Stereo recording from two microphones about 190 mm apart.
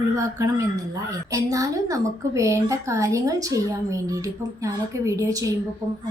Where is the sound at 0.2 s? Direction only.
15° right (ahead or behind).